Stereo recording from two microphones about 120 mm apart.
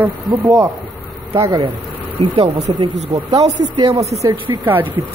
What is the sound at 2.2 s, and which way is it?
Speech, 50° right (ahead or behind).